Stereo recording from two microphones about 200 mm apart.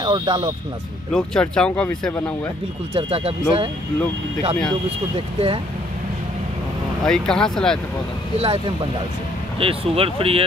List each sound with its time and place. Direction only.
0.0 s speech: 25° right (ahead or behind)
1.1 s speech: 5° left (ahead or behind)
2.9 s speech: 25° right (ahead or behind)
7.0 s speech: 5° left (ahead or behind)
8.4 s speech: 25° right (ahead or behind)